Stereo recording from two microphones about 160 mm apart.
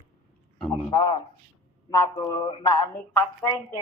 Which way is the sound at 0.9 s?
25° left (ahead or behind).